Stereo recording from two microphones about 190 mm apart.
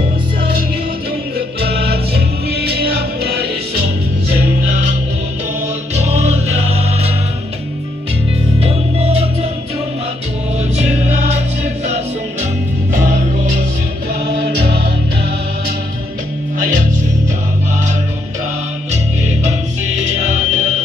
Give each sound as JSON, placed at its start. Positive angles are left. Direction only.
{"t": 1.7, "sound": "music", "side_deg": -60}
{"t": 6.1, "sound": "music", "side_deg": -35}
{"t": 8.5, "sound": "music", "side_deg": -30}
{"t": 12.9, "sound": "music", "side_deg": -40}
{"t": 14.2, "sound": "music", "side_deg": -60}
{"t": 16.5, "sound": "music", "side_deg": -45}
{"t": 18.9, "sound": "music", "side_deg": -35}